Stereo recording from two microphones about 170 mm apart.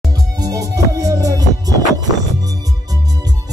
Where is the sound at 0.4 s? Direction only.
20° right (ahead or behind).